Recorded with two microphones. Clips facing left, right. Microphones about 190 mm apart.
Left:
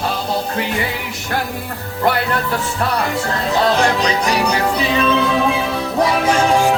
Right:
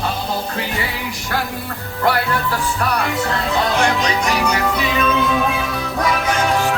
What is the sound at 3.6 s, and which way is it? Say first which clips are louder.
Music: left 4 dB; 35° left (ahead or behind).